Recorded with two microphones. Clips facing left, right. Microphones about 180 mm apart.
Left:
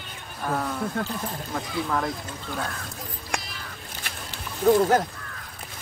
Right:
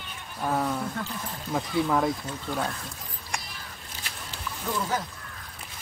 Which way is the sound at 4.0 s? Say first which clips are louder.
Even; 60° left (ahead or behind).